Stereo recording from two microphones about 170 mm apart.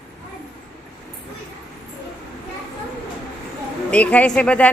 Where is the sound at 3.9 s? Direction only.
10° left (ahead or behind).